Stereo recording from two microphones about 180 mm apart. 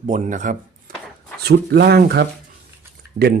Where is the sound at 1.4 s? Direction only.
65° right (ahead or behind).